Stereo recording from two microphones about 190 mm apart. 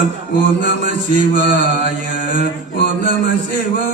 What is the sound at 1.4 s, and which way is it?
Mantra, 70° left (ahead or behind).